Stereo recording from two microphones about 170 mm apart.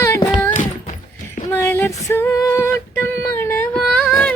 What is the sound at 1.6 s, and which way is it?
Female singing, 15° left (ahead or behind).